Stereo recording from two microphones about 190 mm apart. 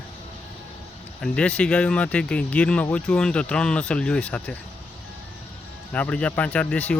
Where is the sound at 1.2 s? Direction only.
5° left (ahead or behind).